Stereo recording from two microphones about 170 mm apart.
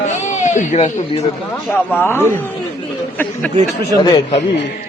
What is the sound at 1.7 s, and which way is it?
Speech, 10° left (ahead or behind).